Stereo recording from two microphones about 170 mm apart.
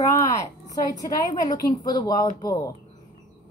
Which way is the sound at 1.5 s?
50° left (ahead or behind).